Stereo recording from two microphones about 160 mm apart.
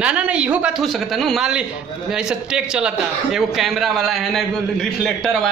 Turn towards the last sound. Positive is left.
turn(degrees=0)  # may be behind; listen again after turning